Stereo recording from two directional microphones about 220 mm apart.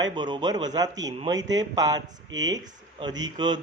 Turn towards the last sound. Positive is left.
turn(degrees=-20)  # may be behind; listen again after turning